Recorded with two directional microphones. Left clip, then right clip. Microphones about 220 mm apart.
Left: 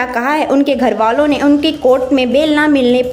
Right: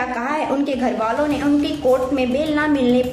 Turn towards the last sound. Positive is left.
turn(degrees=45)  # may be behind; listen again after turning